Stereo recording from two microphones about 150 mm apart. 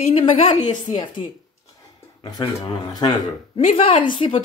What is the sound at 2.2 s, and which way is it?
Speech, 25° left (ahead or behind).